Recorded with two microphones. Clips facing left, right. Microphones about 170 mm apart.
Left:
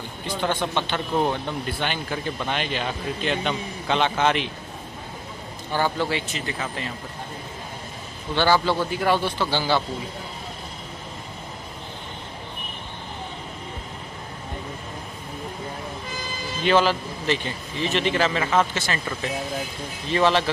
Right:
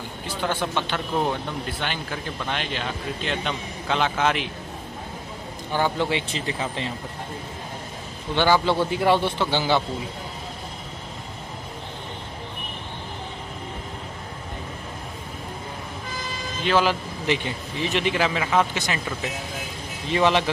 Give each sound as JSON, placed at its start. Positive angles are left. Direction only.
{"t": 0.3, "sound": "speech", "side_deg": -10}
{"t": 5.9, "sound": "speech", "side_deg": -20}
{"t": 8.4, "sound": "speech", "side_deg": -15}
{"t": 16.6, "sound": "speech", "side_deg": -10}
{"t": 20.1, "sound": "speech", "side_deg": -15}